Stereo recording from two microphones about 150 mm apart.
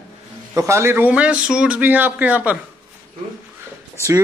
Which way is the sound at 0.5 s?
20° right (ahead or behind).